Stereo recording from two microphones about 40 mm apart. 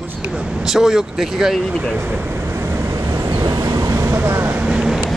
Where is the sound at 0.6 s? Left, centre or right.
Centre.